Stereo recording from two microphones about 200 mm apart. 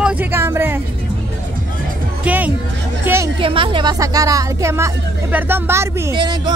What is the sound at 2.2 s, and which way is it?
Speech, 10° right (ahead or behind).